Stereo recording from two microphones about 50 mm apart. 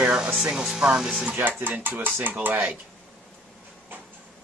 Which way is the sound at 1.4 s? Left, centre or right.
Right.